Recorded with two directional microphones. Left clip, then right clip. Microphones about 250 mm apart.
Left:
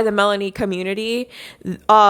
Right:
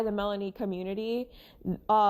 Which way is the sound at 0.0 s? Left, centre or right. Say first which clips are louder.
Left 14 dB; left.